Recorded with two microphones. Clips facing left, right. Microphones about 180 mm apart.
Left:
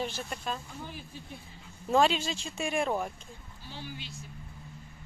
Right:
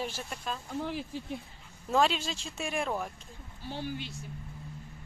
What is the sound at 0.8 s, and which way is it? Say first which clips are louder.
Speech: right 8 dB; 80° right.